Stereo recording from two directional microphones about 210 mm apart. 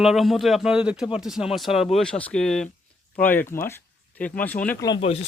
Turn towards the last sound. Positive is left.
turn(degrees=25)  # may be behind; listen again after turning